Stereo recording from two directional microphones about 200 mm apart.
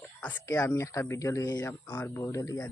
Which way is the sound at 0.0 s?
10° left (ahead or behind).